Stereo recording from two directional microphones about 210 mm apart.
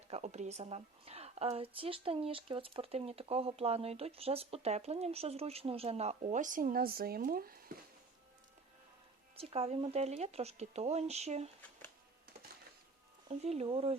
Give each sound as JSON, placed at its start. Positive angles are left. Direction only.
{"t": 0.1, "sound": "a woman's voice", "side_deg": -30}
{"t": 9.3, "sound": "a woman's voice", "side_deg": -30}
{"t": 13.2, "sound": "a woman's voice", "side_deg": -30}